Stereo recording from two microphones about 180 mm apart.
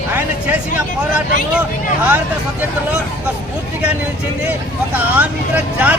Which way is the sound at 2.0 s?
10° right (ahead or behind).